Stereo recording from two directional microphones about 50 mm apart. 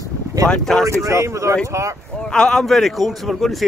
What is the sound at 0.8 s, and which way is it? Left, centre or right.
Speech, right.